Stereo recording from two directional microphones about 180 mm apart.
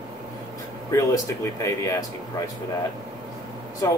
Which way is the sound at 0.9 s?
15° left (ahead or behind).